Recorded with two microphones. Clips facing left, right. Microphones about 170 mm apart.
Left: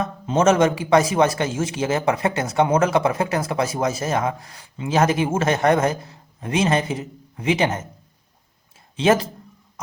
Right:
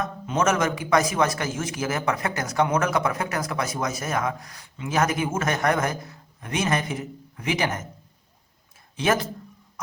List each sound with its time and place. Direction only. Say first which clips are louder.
0.0 s a man's voice: left 5 dB; 30° left (ahead or behind)
9.0 s speech: left 5 dB; 25° left (ahead or behind)